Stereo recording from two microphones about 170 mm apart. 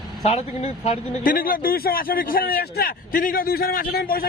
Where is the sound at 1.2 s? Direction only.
55° left (ahead or behind).